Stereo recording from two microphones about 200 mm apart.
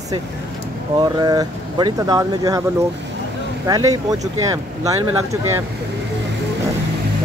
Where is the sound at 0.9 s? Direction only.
20° right (ahead or behind).